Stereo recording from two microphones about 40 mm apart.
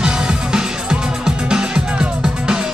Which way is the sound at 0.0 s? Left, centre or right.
Centre.